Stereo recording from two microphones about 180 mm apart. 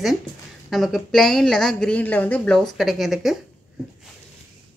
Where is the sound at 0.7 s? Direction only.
Centre (ahead or behind).